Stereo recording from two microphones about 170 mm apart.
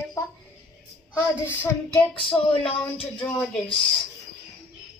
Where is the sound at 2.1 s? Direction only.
30° left (ahead or behind).